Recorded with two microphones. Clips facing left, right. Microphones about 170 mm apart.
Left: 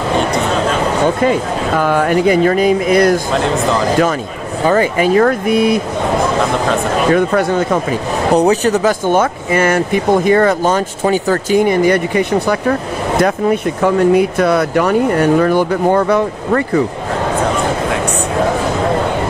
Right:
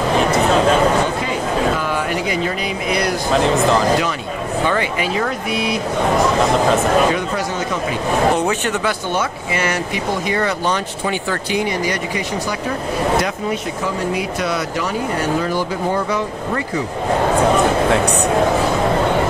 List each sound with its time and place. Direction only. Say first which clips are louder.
1.8 s speech: left 8 dB; 50° left (ahead or behind)
3.3 s speech: even; centre (ahead or behind)
4.6 s speech: left 10 dB; 45° left (ahead or behind)
7.2 s speech: left 8 dB; 55° left (ahead or behind)
8.4 s speech: left 8 dB; 40° left (ahead or behind); by 16.8 s 55° left (ahead or behind)